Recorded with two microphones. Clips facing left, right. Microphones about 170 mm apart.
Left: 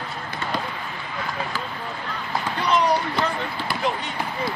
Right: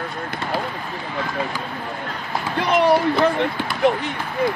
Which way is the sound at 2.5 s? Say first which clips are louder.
Right 5 dB; 55° right (ahead or behind).